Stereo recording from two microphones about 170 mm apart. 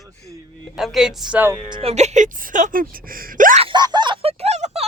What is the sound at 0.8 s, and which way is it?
Speech, centre (ahead or behind).